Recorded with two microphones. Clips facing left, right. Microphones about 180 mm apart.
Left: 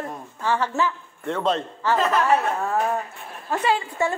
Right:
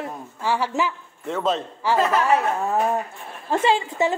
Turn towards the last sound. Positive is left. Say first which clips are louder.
# right 2 dB
turn(degrees=-25)  # may be behind; listen again after turning